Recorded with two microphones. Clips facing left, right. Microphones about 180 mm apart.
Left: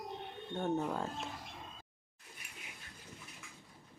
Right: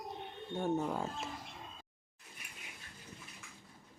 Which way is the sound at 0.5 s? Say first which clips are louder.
Right 1 dB; centre (ahead or behind).